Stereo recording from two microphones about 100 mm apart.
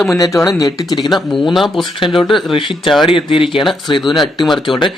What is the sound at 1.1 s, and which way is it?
Speech, centre (ahead or behind).